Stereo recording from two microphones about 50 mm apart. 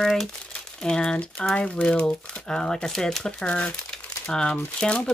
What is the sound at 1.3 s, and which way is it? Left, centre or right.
Speech, left.